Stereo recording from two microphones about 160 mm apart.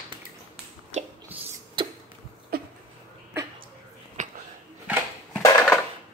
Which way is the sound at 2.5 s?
70° right (ahead or behind).